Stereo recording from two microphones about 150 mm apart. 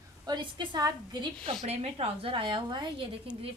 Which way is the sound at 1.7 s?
45° right (ahead or behind).